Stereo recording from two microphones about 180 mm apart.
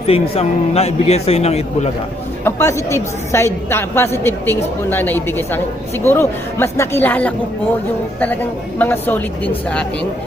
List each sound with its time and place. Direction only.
0.0 s a man's voice: 35° left (ahead or behind)
2.4 s a woman's voice: 15° left (ahead or behind)